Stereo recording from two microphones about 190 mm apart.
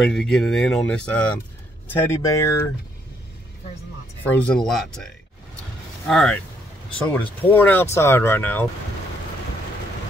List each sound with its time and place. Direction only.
0.1 s speech: centre (ahead or behind)
4.2 s speech: 5° left (ahead or behind)